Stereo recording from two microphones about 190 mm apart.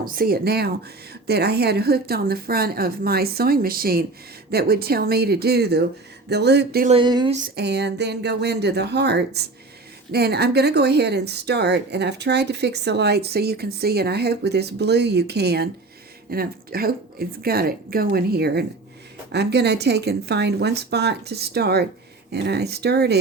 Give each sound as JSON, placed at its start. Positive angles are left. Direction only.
{"t": 0.0, "sound": "speech", "side_deg": -50}
{"t": 6.8, "sound": "speech", "side_deg": -25}
{"t": 7.4, "sound": "speech", "side_deg": -60}